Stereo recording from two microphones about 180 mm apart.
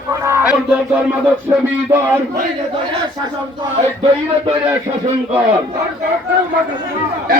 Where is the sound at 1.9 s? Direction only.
15° right (ahead or behind).